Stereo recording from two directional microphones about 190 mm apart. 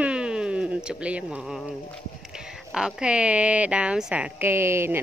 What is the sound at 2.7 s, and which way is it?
Speech, 5° right (ahead or behind).